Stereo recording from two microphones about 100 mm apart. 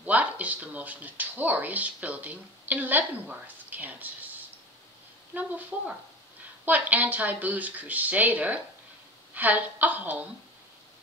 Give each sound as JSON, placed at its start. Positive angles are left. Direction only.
{"t": 0.0, "sound": "speech", "side_deg": -15}
{"t": 5.3, "sound": "speech", "side_deg": -15}